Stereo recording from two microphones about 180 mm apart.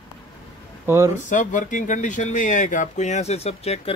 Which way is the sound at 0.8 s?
15° right (ahead or behind).